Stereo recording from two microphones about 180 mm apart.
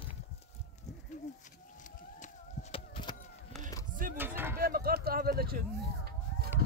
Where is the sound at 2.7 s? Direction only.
25° left (ahead or behind).